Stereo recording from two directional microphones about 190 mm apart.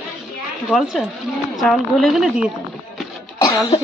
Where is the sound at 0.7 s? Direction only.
Centre (ahead or behind).